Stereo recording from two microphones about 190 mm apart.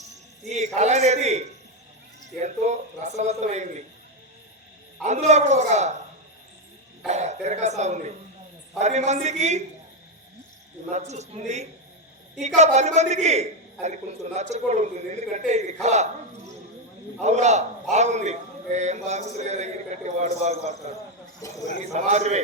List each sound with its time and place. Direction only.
0.5 s a man's voice: 35° right (ahead or behind)
5.0 s a man's voice: 35° right (ahead or behind)
7.1 s a man's voice: 35° right (ahead or behind)
10.8 s a man's voice: 40° right (ahead or behind)
17.2 s a man's voice: 35° right (ahead or behind)
21.4 s speech: 15° left (ahead or behind)
21.9 s a man's voice: 35° right (ahead or behind)